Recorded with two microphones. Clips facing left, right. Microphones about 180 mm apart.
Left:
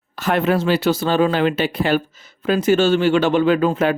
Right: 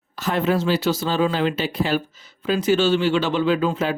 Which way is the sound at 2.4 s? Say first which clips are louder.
Left 3 dB; 50° left (ahead or behind).